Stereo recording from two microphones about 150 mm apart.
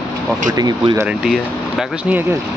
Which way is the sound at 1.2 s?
5° right (ahead or behind).